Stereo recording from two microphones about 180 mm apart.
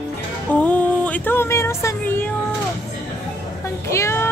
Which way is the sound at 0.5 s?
10° left (ahead or behind).